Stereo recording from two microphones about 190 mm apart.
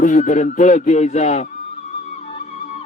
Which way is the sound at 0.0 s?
45° left (ahead or behind).